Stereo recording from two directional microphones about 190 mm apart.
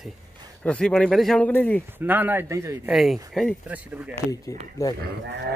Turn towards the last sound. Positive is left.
turn(degrees=-60)  # may be behind; listen again after turning